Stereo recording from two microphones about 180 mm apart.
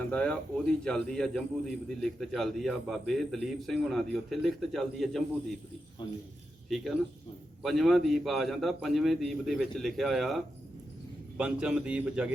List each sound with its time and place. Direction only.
0.0 s a man's voice: 5° left (ahead or behind)
6.7 s a man's voice: centre (ahead or behind)